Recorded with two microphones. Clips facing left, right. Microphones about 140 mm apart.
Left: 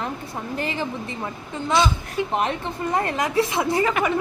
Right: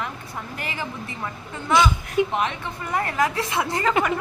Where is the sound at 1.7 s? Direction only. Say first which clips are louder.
Right 2 dB; 15° right (ahead or behind).